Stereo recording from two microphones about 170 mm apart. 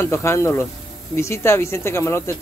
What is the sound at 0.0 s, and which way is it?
Speech, 15° left (ahead or behind).